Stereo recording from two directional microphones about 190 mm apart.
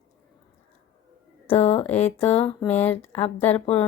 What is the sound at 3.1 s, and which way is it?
Speech, 30° left (ahead or behind).